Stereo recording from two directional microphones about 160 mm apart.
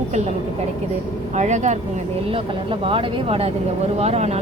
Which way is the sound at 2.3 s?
35° right (ahead or behind).